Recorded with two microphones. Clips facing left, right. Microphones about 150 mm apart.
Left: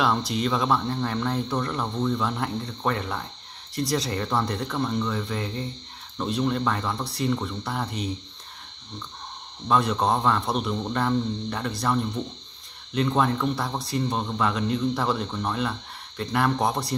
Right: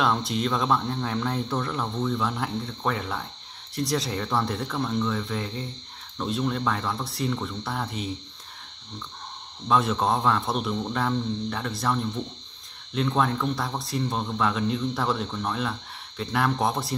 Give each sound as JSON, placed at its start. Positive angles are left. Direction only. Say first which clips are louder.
{"t": 0.0, "sound": "speech", "louder": "left 1 dB", "side_deg": 0}
{"t": 9.7, "sound": "speech", "louder": "left 1 dB", "side_deg": 0}